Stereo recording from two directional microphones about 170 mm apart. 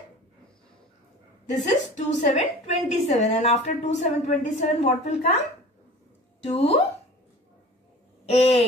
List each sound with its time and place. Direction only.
1.4 s a woman's voice: 45° left (ahead or behind)
6.4 s a woman's voice: 35° left (ahead or behind)
8.3 s a woman's voice: 40° left (ahead or behind)